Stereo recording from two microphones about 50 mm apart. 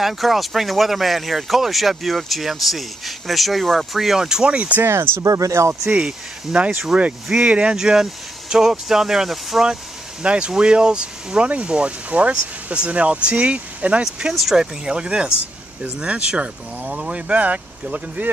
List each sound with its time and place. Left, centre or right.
0.0 s speech: centre
4.5 s speech: right
4.8 s speech: right
5.9 s speech: right
6.9 s speech: centre
7.4 s speech: right; by 9.7 s centre
10.2 s speech: right
14.3 s speech: centre; by 18.3 s right